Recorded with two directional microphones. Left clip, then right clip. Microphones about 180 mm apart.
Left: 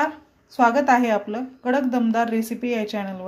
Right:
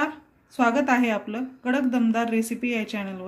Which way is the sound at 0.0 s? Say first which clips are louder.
Left 4 dB; 20° left (ahead or behind).